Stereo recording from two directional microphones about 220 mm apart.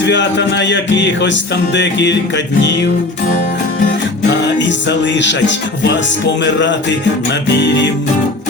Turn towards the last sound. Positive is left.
turn(degrees=50)  # may be behind; listen again after turning